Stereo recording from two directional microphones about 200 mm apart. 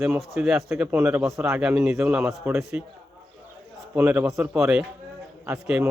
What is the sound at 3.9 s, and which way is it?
A man's voice, 10° right (ahead or behind).